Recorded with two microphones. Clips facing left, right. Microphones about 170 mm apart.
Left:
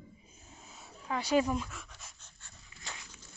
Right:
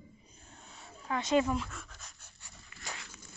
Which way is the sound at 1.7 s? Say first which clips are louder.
Right 1 dB; centre (ahead or behind).